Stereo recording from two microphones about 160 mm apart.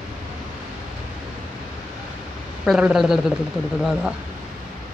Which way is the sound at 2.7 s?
5° right (ahead or behind).